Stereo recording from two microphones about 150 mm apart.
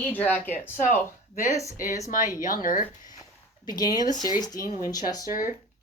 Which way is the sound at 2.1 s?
20° right (ahead or behind).